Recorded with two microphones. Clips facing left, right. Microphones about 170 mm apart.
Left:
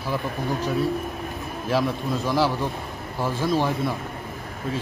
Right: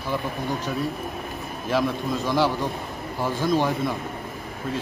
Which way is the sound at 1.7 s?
Centre (ahead or behind).